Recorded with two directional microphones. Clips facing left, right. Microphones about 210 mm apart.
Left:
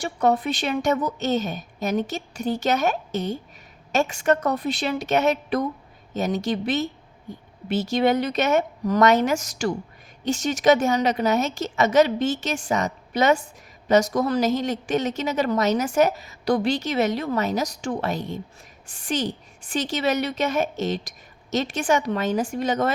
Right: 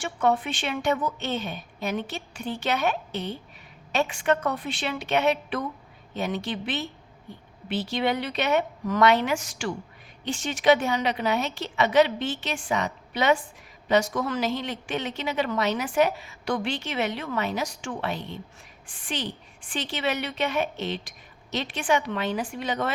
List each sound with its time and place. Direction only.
0.0 s a woman's voice: 40° left (ahead or behind)